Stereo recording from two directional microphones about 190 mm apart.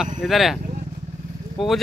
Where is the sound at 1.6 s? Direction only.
Centre (ahead or behind).